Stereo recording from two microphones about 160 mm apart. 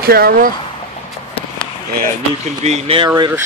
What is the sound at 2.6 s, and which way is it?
Speech, 45° right (ahead or behind).